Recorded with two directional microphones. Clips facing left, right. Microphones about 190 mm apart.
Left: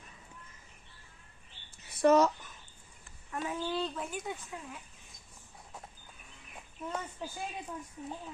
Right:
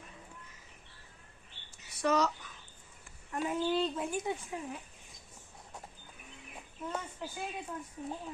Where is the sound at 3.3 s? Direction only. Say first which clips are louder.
Right 2 dB; 5° right (ahead or behind).